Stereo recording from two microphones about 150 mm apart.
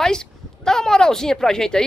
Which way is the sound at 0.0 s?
5° left (ahead or behind).